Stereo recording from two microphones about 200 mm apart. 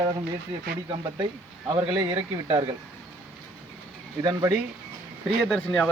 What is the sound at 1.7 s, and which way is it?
Speech, 25° right (ahead or behind).